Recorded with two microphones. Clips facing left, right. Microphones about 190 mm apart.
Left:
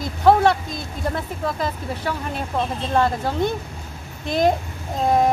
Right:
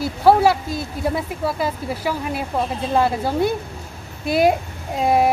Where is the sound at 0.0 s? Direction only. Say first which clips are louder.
Right 1 dB; 10° right (ahead or behind).